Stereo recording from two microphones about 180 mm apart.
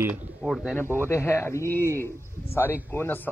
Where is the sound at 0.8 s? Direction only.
15° left (ahead or behind).